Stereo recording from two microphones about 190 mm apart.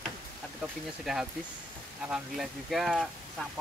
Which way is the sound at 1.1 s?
Centre (ahead or behind).